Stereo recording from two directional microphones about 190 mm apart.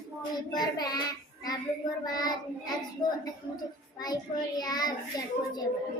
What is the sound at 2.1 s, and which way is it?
Speech, 20° left (ahead or behind).